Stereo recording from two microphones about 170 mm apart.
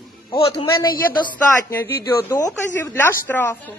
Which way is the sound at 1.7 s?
15° left (ahead or behind).